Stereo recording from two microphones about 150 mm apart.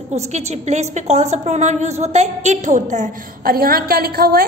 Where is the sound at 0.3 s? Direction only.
50° right (ahead or behind).